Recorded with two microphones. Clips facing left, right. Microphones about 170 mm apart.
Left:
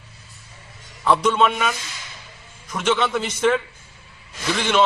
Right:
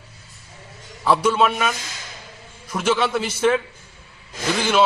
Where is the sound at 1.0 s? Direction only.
5° right (ahead or behind).